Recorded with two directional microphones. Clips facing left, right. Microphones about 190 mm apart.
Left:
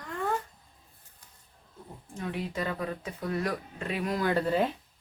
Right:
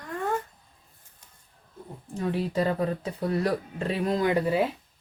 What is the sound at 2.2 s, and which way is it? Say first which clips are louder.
Speech: right 7 dB; 35° right (ahead or behind).